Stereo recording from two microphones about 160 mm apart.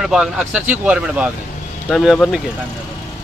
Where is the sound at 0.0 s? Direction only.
5° right (ahead or behind).